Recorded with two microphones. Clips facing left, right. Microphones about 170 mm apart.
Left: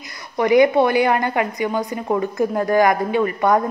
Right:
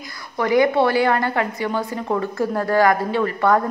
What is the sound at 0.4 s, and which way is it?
A woman's voice, 20° left (ahead or behind).